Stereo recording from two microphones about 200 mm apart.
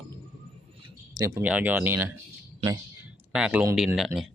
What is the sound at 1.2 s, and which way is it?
Speech, 15° right (ahead or behind).